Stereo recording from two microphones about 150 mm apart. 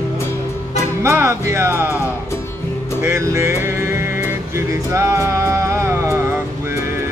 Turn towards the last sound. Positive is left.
turn(degrees=-15)  # may be behind; listen again after turning